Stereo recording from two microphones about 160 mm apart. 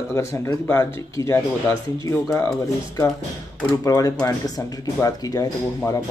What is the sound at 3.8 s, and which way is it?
Speech, 20° left (ahead or behind).